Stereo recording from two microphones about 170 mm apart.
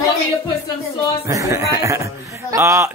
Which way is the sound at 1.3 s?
20° right (ahead or behind).